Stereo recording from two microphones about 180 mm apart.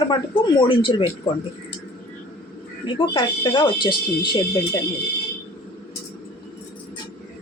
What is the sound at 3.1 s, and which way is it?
A woman's voice, 25° left (ahead or behind).